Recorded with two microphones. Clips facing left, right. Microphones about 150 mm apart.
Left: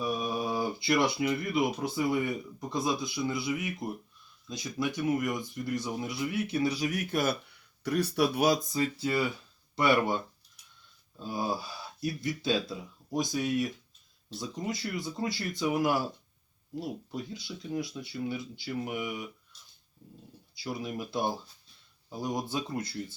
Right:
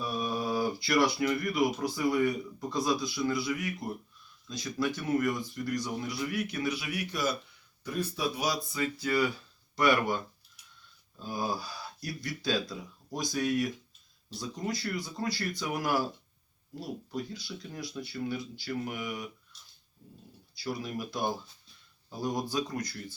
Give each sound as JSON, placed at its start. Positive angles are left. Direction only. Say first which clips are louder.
{"t": 0.0, "sound": "speech", "louder": "left 1 dB", "side_deg": 15}
{"t": 7.9, "sound": "speech", "louder": "left 5 dB", "side_deg": 75}
{"t": 8.7, "sound": "speech", "louder": "left 1 dB", "side_deg": 30}
{"t": 11.2, "sound": "speech", "louder": "left 1 dB", "side_deg": 25}
{"t": 17.1, "sound": "speech", "louder": "right 1 dB", "side_deg": 20}
{"t": 20.8, "sound": "speech", "louder": "left 3 dB", "side_deg": 25}